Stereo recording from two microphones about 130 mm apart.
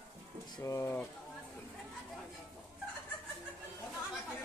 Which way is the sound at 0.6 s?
20° left (ahead or behind).